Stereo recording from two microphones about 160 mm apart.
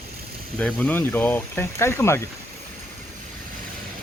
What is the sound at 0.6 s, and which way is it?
Speech, 5° left (ahead or behind).